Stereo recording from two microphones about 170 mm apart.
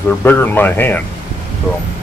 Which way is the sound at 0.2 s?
10° left (ahead or behind).